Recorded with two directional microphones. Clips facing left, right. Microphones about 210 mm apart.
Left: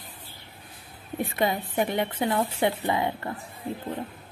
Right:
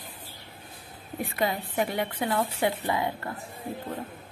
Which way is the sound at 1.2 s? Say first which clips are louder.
Left 2 dB; 20° left (ahead or behind).